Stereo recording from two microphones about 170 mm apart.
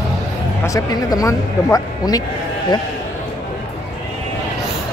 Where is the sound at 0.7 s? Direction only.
20° left (ahead or behind).